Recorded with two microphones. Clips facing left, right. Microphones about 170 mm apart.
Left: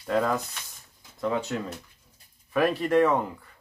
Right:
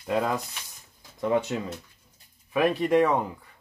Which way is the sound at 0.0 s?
15° right (ahead or behind).